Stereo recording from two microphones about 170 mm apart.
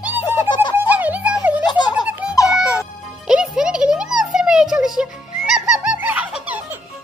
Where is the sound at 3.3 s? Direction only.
5° right (ahead or behind).